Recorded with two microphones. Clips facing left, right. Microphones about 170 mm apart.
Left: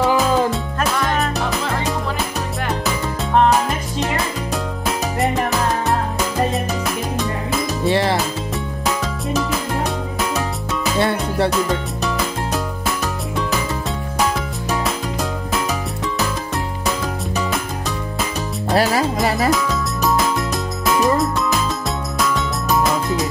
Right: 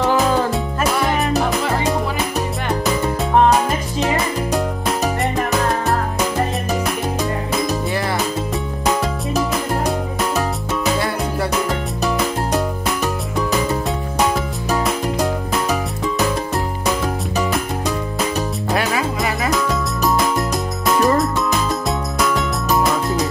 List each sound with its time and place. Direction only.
0.0 s music: centre (ahead or behind)
4.5 s music: centre (ahead or behind)
7.9 s music: 25° left (ahead or behind)
8.8 s music: centre (ahead or behind)
11.0 s music: 25° left (ahead or behind)
14.7 s music: centre (ahead or behind)
18.7 s music: 35° left (ahead or behind)
19.5 s music: centre (ahead or behind)